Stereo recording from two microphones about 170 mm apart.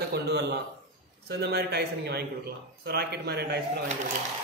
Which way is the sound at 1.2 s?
70° right (ahead or behind).